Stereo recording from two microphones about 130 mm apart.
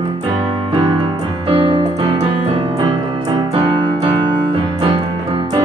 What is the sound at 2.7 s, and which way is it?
Piano, 30° right (ahead or behind).